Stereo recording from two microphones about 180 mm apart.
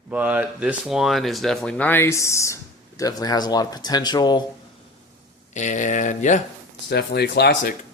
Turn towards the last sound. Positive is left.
turn(degrees=65)  # may be behind; listen again after turning